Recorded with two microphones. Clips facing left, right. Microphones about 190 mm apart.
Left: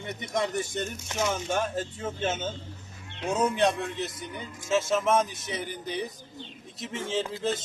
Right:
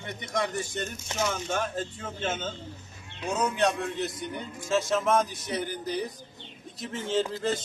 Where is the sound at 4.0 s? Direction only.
Centre (ahead or behind).